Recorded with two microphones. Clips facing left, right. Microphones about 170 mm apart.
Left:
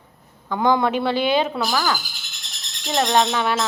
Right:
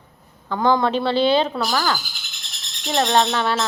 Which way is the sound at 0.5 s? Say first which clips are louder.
Even; 15° left (ahead or behind).